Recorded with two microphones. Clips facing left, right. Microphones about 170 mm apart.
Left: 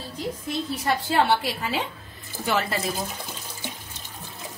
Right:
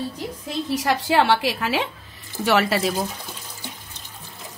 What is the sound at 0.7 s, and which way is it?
Speech, 90° right.